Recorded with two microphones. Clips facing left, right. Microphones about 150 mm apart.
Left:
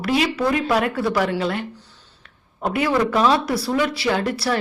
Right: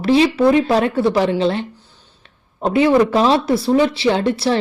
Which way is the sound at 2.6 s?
25° right (ahead or behind).